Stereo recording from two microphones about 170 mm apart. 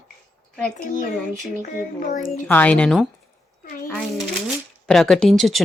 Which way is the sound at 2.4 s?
10° left (ahead or behind).